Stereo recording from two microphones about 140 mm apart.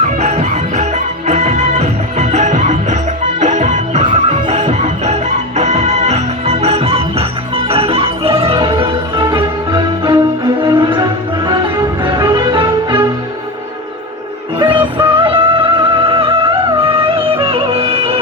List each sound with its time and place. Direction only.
0.0 s music: 50° right (ahead or behind)
4.0 s music: 40° right (ahead or behind)
12.0 s music: 30° right (ahead or behind)
14.6 s music: 35° right (ahead or behind)